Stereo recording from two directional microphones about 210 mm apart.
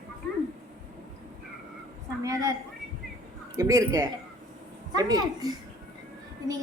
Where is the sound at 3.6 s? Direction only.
15° right (ahead or behind).